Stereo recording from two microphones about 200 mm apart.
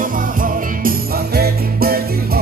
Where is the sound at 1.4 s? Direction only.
50° right (ahead or behind).